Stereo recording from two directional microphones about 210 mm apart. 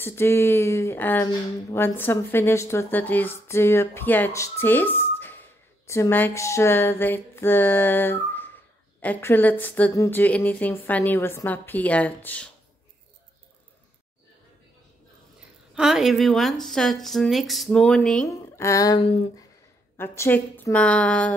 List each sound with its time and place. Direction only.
0.0 s speech: 10° left (ahead or behind)
15.7 s a woman's voice: 5° right (ahead or behind); by 18.9 s 15° left (ahead or behind)
18.9 s speech: 25° left (ahead or behind)
20.0 s speech: 10° left (ahead or behind)